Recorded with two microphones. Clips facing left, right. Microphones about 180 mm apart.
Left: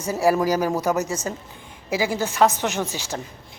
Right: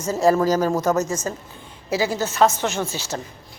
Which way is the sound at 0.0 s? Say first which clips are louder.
Right 2 dB; 10° left (ahead or behind).